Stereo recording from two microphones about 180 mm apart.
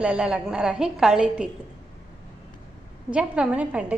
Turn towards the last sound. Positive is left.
turn(degrees=-5)  # may be behind; listen again after turning